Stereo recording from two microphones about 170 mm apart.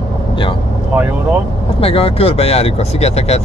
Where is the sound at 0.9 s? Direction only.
10° right (ahead or behind).